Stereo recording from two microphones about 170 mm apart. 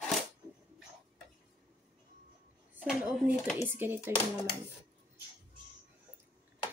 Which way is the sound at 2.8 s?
10° right (ahead or behind).